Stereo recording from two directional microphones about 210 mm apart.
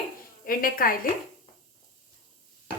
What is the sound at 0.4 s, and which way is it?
Speech, 40° left (ahead or behind).